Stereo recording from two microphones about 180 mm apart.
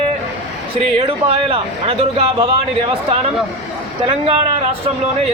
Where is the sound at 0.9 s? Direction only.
30° right (ahead or behind).